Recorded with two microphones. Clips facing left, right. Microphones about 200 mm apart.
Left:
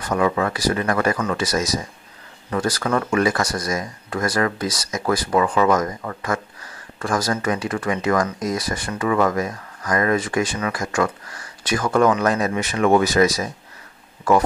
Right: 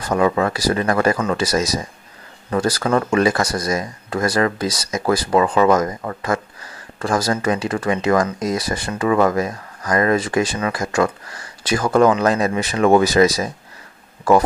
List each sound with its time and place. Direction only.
0.0 s speech: 30° right (ahead or behind)